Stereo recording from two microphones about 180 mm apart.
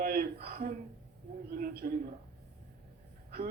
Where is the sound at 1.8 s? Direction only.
45° right (ahead or behind).